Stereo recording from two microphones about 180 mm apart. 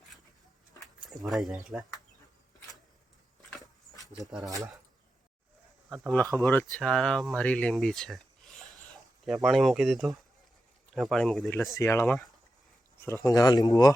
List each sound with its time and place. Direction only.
1.1 s speech: centre (ahead or behind)
6.3 s speech: 10° left (ahead or behind)
11.7 s speech: 15° left (ahead or behind)
13.2 s speech: 20° left (ahead or behind)